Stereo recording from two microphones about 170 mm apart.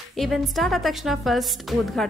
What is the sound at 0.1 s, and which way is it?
A woman's voice, centre (ahead or behind).